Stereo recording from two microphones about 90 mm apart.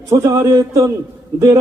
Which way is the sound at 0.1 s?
35° right (ahead or behind).